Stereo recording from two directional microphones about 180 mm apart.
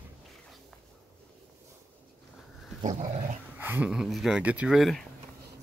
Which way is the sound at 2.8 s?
40° right (ahead or behind).